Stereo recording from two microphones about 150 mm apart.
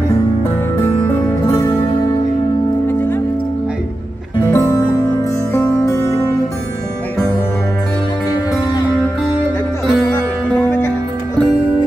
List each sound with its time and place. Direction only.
0.7 s music: 15° left (ahead or behind)
2.9 s music: 15° left (ahead or behind)
4.5 s music: 20° left (ahead or behind)
10.1 s music: 15° left (ahead or behind)